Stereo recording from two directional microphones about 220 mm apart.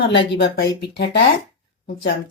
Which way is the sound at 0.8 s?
45° left (ahead or behind).